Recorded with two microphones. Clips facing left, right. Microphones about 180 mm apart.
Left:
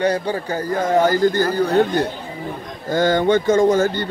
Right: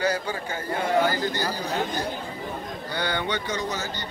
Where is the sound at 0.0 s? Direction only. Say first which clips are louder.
Left 7 dB; 35° left (ahead or behind); by 2.0 s 60° left (ahead or behind).